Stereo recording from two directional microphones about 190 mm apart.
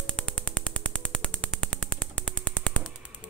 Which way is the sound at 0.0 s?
5° left (ahead or behind).